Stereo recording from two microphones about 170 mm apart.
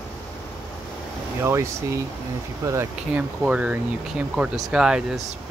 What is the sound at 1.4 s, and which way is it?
Speech, 15° right (ahead or behind).